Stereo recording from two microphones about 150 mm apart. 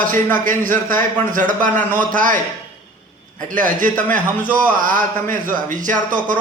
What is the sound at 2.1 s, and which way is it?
Speech, 60° right (ahead or behind).